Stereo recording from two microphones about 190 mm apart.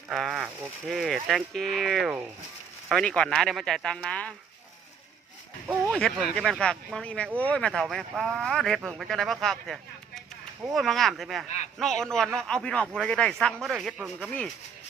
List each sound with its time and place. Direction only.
0.1 s a man's voice: centre (ahead or behind)
5.6 s speech: 10° right (ahead or behind)
5.9 s a man's voice: centre (ahead or behind)
11.4 s speech: 35° left (ahead or behind)
11.8 s a man's voice: 5° left (ahead or behind)